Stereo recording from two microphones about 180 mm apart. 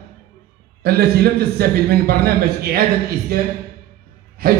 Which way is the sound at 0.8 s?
60° right (ahead or behind).